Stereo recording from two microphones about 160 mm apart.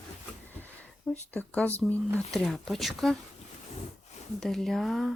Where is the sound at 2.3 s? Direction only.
Centre (ahead or behind).